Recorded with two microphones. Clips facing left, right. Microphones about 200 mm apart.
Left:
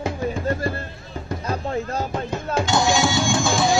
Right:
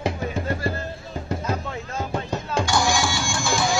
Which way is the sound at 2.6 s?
20° left (ahead or behind).